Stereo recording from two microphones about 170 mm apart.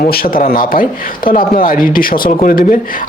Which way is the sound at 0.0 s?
60° left (ahead or behind).